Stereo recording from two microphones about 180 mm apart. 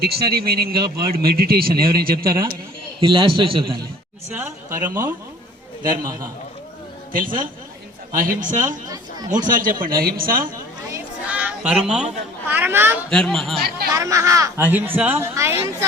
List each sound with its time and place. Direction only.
0.0 s a man's voice: 60° right (ahead or behind)
3.0 s a man's voice: 30° right (ahead or behind)
4.4 s a man's voice: 15° right (ahead or behind)
8.1 s speech: 50° right (ahead or behind)
10.9 s children playing: 10° right (ahead or behind)
12.5 s speech: 10° right (ahead or behind)
13.1 s speech: 5° left (ahead or behind)
13.9 s speech: 15° right (ahead or behind)